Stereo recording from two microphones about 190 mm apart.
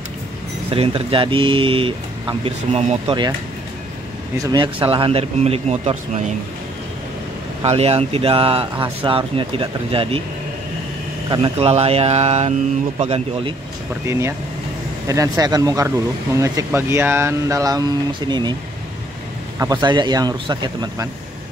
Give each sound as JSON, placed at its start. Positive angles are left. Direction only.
{"t": 0.7, "sound": "speech", "side_deg": -30}
{"t": 4.4, "sound": "speech", "side_deg": -20}
{"t": 7.6, "sound": "speech", "side_deg": -30}
{"t": 11.2, "sound": "speech", "side_deg": -25}
{"t": 14.0, "sound": "speech", "side_deg": -15}
{"t": 19.6, "sound": "speech", "side_deg": -20}